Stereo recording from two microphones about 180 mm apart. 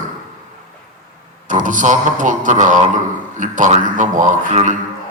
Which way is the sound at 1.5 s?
45° right (ahead or behind).